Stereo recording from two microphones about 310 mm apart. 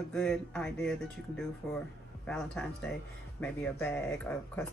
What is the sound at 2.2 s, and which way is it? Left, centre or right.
Speech, centre.